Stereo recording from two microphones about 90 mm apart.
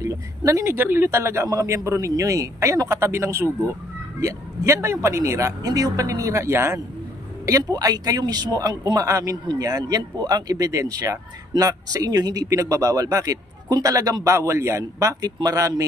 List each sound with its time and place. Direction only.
0.4 s speech: 40° right (ahead or behind)
0.7 s speech: 25° right (ahead or behind)
5.7 s speech: 45° right (ahead or behind); by 6.8 s 30° right (ahead or behind)
7.4 s a man's voice: 45° right (ahead or behind)
15.2 s a man's voice: 50° right (ahead or behind)